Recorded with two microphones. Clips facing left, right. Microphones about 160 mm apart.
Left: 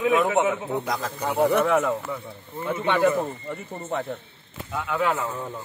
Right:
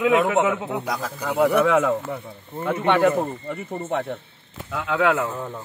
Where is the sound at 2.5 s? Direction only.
60° right (ahead or behind).